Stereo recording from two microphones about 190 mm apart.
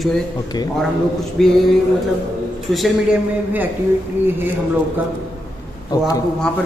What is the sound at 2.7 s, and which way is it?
Speech, 5° right (ahead or behind).